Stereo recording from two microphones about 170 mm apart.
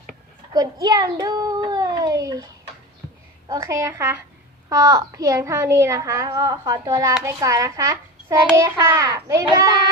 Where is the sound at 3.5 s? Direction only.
15° right (ahead or behind).